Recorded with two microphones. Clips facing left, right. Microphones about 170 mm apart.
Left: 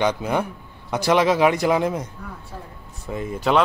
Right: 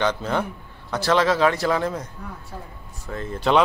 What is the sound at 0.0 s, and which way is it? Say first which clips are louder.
A man's voice: left 2 dB; 15° left (ahead or behind).